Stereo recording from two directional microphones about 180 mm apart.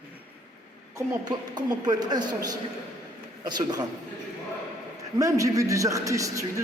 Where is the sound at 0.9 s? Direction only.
20° right (ahead or behind).